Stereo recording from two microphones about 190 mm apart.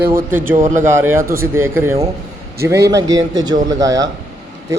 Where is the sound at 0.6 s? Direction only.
40° right (ahead or behind).